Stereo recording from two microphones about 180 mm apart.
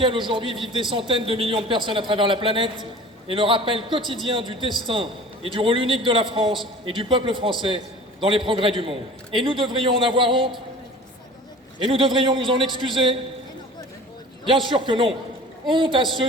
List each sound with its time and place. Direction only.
0.0 s a man's voice: 30° right (ahead or behind)
11.9 s a man's voice: 30° right (ahead or behind)
14.4 s a man's voice: 25° right (ahead or behind)